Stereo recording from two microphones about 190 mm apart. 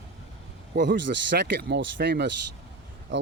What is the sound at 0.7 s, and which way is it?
Speech, 70° right (ahead or behind).